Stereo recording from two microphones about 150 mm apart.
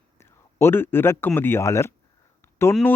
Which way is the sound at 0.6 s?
15° left (ahead or behind).